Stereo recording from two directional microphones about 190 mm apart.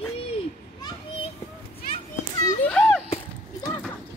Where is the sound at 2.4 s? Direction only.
5° left (ahead or behind).